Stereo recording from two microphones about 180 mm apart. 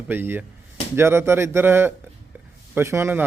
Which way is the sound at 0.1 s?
10° right (ahead or behind).